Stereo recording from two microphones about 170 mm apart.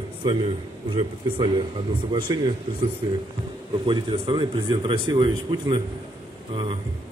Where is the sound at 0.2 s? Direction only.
30° right (ahead or behind).